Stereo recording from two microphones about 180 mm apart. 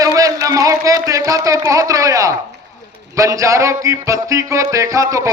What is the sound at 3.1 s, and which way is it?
Music, 15° right (ahead or behind).